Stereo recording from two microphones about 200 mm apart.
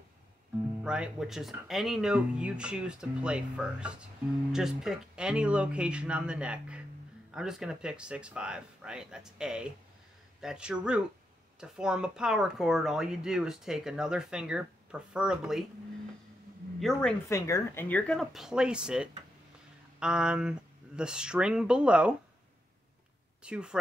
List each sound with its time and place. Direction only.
0.8 s speech: 5° right (ahead or behind)
17.3 s speech: 15° left (ahead or behind); by 22.1 s 5° right (ahead or behind)
23.4 s speech: 5° right (ahead or behind)